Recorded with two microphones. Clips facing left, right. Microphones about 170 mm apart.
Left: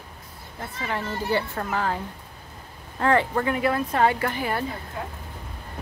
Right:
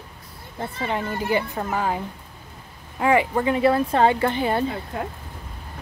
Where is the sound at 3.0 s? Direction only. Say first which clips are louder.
Right 2 dB; 10° right (ahead or behind).